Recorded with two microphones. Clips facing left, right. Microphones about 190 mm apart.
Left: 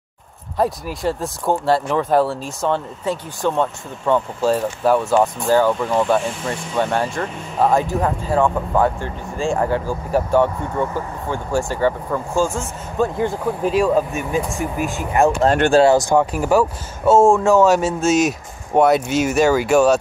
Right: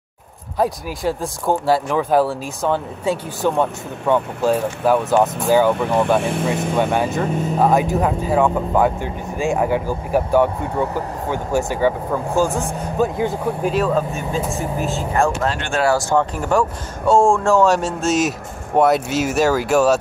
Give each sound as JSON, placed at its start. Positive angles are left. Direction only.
{"t": 0.6, "sound": "speech", "side_deg": 0}
{"t": 5.5, "sound": "speech", "side_deg": -15}
{"t": 13.0, "sound": "speech", "side_deg": -5}
{"t": 13.7, "sound": "speech", "side_deg": 10}